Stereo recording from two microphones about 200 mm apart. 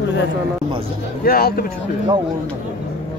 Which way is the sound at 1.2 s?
50° left (ahead or behind).